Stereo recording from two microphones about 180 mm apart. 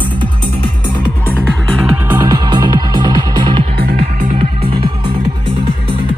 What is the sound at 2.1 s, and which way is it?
Music, 25° right (ahead or behind).